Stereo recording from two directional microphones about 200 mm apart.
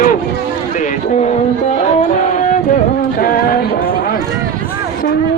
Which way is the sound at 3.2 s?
45° left (ahead or behind).